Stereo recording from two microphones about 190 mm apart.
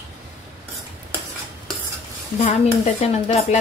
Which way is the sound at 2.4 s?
35° left (ahead or behind).